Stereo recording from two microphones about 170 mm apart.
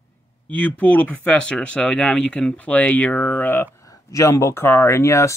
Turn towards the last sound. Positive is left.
turn(degrees=15)  # may be behind; listen again after turning